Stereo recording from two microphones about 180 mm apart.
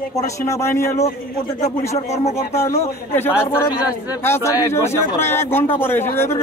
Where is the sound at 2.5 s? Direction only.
15° left (ahead or behind).